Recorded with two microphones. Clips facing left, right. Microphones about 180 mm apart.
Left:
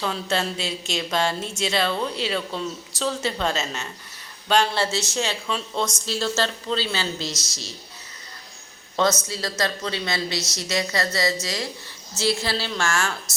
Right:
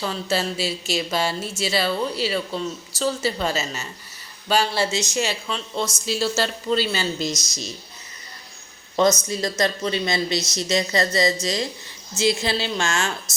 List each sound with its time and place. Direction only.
0.0 s a woman's voice: 5° right (ahead or behind)
5.5 s a woman's voice: centre (ahead or behind); by 7.7 s 15° right (ahead or behind)
9.3 s a woman's voice: 15° right (ahead or behind)